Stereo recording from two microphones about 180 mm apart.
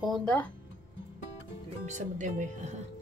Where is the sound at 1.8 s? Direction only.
45° right (ahead or behind).